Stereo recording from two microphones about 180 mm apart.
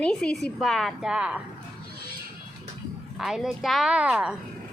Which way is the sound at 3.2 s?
Centre (ahead or behind).